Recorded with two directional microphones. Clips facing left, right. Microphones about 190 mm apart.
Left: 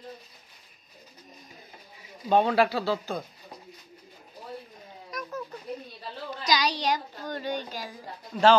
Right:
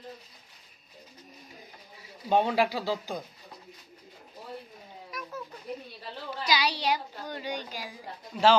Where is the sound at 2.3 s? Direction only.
15° right (ahead or behind).